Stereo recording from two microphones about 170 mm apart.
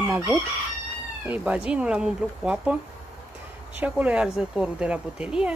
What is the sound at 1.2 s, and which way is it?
Speech, 10° right (ahead or behind).